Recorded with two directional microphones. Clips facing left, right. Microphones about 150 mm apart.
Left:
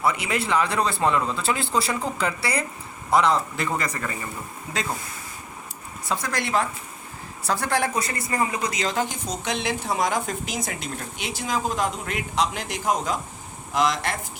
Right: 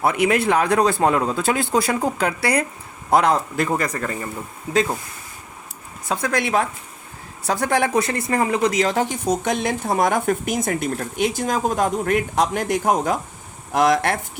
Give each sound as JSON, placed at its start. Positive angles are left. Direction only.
{"t": 0.0, "sound": "speech", "side_deg": -55}
{"t": 6.1, "sound": "speech", "side_deg": -55}